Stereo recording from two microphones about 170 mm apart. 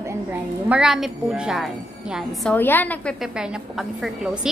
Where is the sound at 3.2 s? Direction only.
5° right (ahead or behind).